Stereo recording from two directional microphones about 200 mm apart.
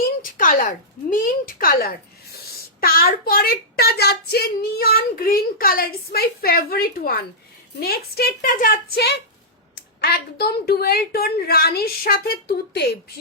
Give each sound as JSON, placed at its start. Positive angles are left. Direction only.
{"t": 0.0, "sound": "speech", "side_deg": 45}